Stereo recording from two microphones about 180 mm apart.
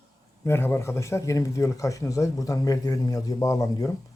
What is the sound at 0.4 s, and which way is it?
Speech, 15° left (ahead or behind).